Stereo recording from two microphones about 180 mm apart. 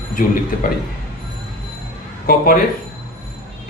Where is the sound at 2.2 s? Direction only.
50° left (ahead or behind).